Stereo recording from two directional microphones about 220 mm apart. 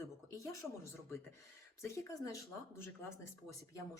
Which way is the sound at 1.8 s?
15° left (ahead or behind).